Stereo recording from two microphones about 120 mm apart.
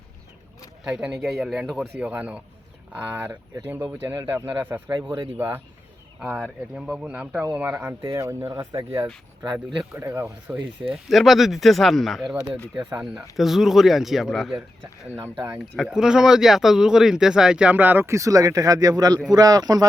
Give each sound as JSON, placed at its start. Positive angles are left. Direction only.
{"t": 0.9, "sound": "speech", "side_deg": -5}
{"t": 6.1, "sound": "speech", "side_deg": -5}
{"t": 8.1, "sound": "speech", "side_deg": -25}
{"t": 9.9, "sound": "speech", "side_deg": -20}
{"t": 10.5, "sound": "speech", "side_deg": -5}
{"t": 15.1, "sound": "speech", "side_deg": -25}
{"t": 15.9, "sound": "speech", "side_deg": -5}